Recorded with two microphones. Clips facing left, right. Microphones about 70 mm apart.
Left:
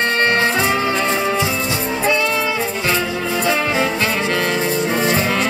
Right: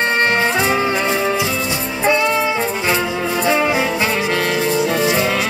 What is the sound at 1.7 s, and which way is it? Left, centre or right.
Music, centre.